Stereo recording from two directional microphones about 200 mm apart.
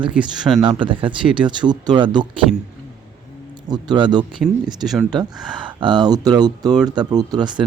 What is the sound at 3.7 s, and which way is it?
Speech, 20° right (ahead or behind).